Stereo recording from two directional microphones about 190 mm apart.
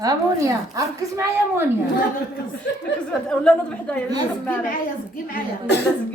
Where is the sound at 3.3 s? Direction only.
5° left (ahead or behind).